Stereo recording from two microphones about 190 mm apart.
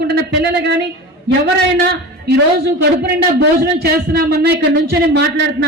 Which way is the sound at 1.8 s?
60° right (ahead or behind).